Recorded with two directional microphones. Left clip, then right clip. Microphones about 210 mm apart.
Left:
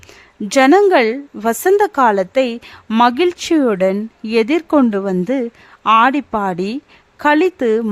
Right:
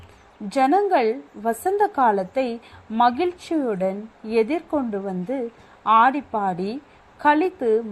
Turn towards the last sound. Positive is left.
turn(degrees=35)  # may be behind; listen again after turning